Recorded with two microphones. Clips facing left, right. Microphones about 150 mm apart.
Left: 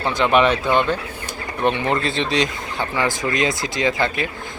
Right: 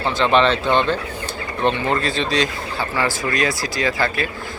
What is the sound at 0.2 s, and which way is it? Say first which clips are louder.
Speech: even; 10° left (ahead or behind).